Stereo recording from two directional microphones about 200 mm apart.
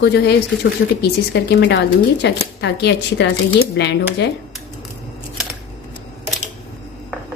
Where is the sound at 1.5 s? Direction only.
60° left (ahead or behind).